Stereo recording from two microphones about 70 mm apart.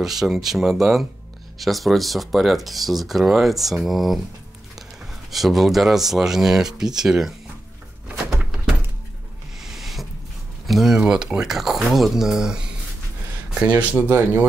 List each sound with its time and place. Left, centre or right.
0.0 s speech: centre
5.3 s speech: centre
9.6 s a sound: centre
10.7 s speech: centre; by 14.4 s right